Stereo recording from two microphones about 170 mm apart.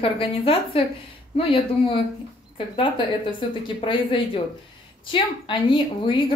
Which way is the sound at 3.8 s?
30° left (ahead or behind).